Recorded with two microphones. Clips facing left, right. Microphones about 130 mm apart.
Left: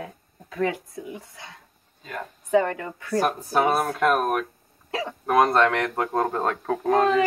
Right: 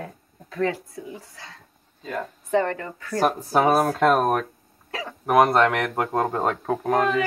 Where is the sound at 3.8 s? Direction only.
25° right (ahead or behind).